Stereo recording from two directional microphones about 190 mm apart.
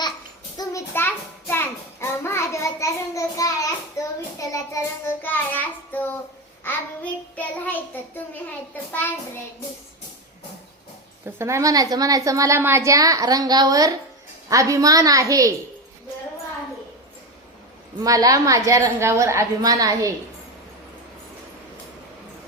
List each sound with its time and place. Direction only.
0.5 s child singing: 15° left (ahead or behind)
11.3 s a woman's voice: 15° right (ahead or behind)
18.0 s a woman's voice: 20° right (ahead or behind)